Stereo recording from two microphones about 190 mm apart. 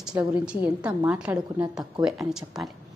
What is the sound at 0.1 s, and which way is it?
A woman's voice, 15° right (ahead or behind).